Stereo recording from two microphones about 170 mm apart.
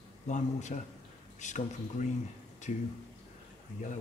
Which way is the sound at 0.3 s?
45° left (ahead or behind).